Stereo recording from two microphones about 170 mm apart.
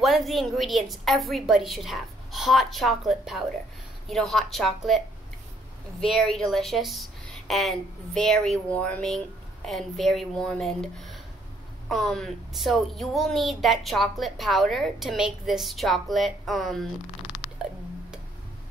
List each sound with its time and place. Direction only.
0.0 s a woman's voice: centre (ahead or behind)